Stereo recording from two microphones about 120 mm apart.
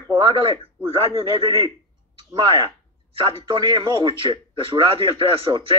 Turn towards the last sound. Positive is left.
turn(degrees=-45)  # may be behind; listen again after turning